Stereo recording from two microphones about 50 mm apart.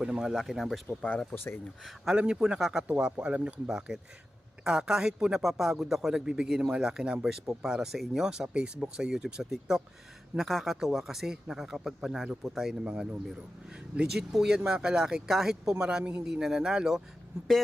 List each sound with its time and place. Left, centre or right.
0.0 s speech: centre
0.3 s speech: centre
0.9 s speech: left
2.1 s speech: centre
6.1 s speech: centre
7.3 s speech: centre